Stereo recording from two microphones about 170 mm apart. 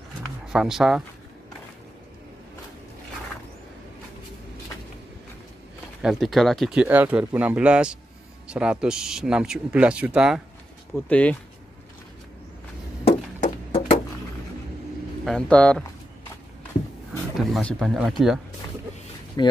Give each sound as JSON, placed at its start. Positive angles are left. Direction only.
{"t": 0.5, "sound": "speech", "side_deg": -5}
{"t": 6.0, "sound": "speech", "side_deg": 0}
{"t": 11.1, "sound": "speech", "side_deg": 10}
{"t": 13.0, "sound": "a sound", "side_deg": 35}
{"t": 15.2, "sound": "speech", "side_deg": 5}
{"t": 17.4, "sound": "speech", "side_deg": 5}
{"t": 19.4, "sound": "speech", "side_deg": 20}